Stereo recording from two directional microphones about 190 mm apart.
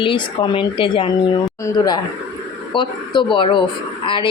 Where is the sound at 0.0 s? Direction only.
25° left (ahead or behind).